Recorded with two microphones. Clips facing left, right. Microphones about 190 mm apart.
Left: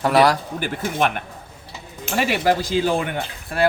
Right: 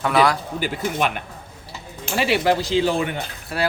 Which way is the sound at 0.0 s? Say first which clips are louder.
Left 2 dB; 45° left (ahead or behind).